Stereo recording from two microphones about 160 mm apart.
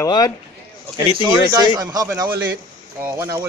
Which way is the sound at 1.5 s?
25° right (ahead or behind).